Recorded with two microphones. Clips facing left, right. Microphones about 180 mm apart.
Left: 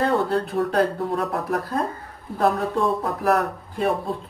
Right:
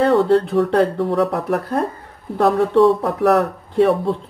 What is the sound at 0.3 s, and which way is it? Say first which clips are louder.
Speech: right 7 dB; 75° right (ahead or behind).